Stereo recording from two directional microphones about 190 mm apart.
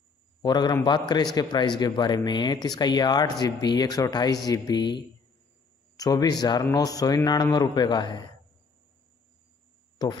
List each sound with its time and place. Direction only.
0.4 s speech: 20° left (ahead or behind)